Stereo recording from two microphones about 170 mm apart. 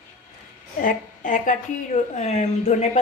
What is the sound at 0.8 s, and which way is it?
A woman's voice, 50° left (ahead or behind).